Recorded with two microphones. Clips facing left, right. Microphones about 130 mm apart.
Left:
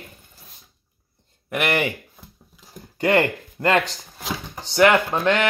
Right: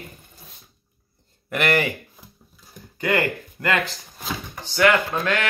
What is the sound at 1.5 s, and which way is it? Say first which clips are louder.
Speech: right 1 dB; 15° left (ahead or behind).